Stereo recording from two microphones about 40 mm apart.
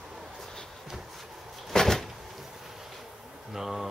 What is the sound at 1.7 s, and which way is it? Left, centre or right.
Cupboard open or close, centre.